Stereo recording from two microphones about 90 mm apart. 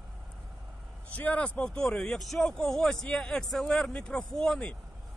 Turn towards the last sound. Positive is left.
turn(degrees=10)  # may be behind; listen again after turning